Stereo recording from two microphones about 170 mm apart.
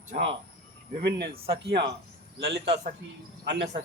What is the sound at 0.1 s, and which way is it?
Speech, 55° right (ahead or behind).